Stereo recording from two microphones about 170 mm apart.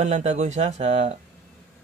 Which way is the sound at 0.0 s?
45° right (ahead or behind).